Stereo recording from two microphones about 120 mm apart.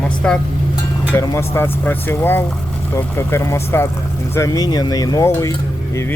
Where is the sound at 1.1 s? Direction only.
25° left (ahead or behind).